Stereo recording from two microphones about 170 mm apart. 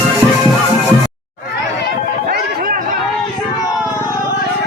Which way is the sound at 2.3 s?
60° right (ahead or behind).